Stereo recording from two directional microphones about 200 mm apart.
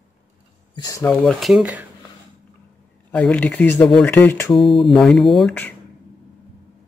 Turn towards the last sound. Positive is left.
turn(degrees=5)  # may be behind; listen again after turning